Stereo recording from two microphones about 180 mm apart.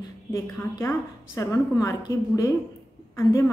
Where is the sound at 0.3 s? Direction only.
15° left (ahead or behind).